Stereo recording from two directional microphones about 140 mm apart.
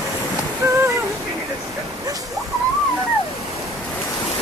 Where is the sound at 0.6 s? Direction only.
20° right (ahead or behind).